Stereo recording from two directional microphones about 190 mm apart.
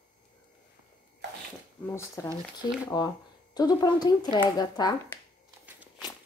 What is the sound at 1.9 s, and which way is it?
Speech, 10° left (ahead or behind).